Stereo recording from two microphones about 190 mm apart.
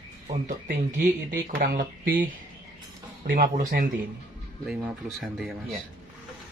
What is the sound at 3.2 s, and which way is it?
Speech, 45° right (ahead or behind).